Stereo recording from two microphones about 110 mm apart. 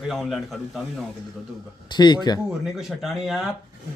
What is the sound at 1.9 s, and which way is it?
Speech, 40° left (ahead or behind).